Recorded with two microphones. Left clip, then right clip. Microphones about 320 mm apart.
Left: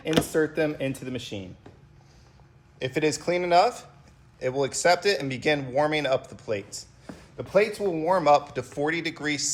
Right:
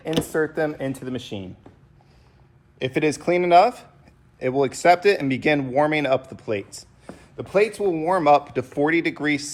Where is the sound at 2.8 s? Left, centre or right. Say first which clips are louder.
Right 3 dB; right.